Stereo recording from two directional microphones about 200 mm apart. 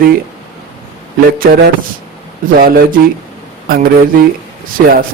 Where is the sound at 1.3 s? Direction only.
45° right (ahead or behind).